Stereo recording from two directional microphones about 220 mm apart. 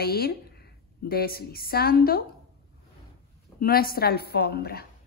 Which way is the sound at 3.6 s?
40° left (ahead or behind).